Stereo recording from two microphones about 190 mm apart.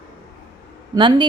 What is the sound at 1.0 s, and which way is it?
Speech, 25° right (ahead or behind).